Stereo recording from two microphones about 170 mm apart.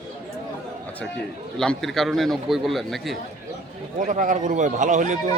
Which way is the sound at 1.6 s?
Centre (ahead or behind).